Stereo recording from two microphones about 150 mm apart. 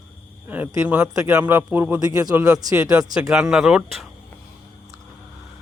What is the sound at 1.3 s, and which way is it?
Speech, 10° right (ahead or behind).